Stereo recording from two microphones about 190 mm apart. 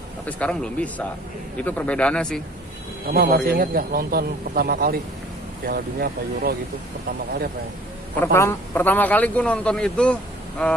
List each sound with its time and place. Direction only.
0.3 s a man's voice: 5° left (ahead or behind)
3.1 s speech: 50° right (ahead or behind)
8.2 s a man's voice: 15° left (ahead or behind)